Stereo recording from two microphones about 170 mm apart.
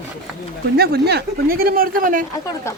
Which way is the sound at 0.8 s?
70° right (ahead or behind).